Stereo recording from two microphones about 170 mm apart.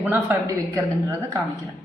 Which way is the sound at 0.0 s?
10° right (ahead or behind).